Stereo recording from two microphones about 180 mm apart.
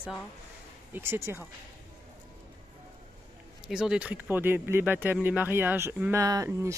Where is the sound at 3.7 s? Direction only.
5° right (ahead or behind).